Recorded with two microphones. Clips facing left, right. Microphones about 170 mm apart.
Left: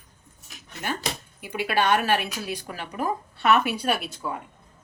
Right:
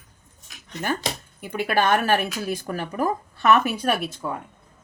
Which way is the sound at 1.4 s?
50° right (ahead or behind).